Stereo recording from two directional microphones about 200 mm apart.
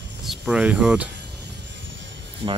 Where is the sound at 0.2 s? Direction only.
5° right (ahead or behind).